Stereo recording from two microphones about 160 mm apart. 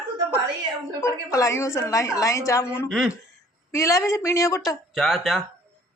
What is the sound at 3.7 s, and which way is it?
Speech, 20° left (ahead or behind).